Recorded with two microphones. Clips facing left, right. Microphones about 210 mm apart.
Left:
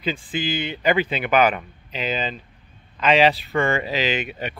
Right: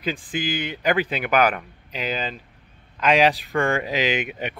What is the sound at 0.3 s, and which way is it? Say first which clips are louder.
Speech: left 1 dB; 10° right (ahead or behind).